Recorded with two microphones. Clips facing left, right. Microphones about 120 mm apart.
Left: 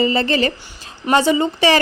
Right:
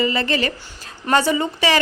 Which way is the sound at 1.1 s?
20° left (ahead or behind).